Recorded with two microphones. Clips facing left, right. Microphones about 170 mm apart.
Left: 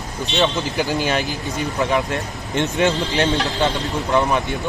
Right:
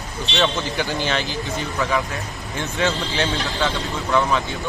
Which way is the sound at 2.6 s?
15° left (ahead or behind).